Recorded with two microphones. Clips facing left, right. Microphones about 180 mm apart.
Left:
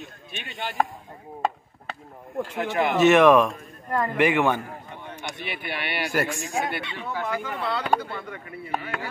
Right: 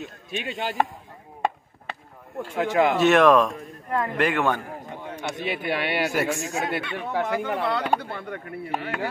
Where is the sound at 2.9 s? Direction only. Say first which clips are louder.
Left 3 dB; centre (ahead or behind).